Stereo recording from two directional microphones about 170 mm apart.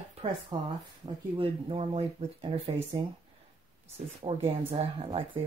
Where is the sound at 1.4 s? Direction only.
35° right (ahead or behind).